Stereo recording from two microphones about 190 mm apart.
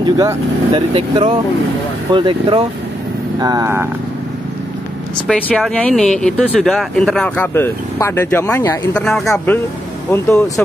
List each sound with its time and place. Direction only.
0.0 s speech: 20° right (ahead or behind)
5.5 s speech: 5° left (ahead or behind)
10.1 s speech: 15° left (ahead or behind)